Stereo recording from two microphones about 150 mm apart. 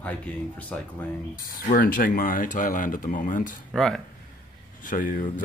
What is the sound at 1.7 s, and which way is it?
Speech, 65° left (ahead or behind).